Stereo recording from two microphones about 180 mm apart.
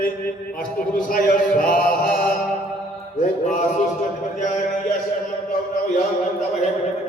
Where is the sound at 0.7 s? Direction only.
50° left (ahead or behind).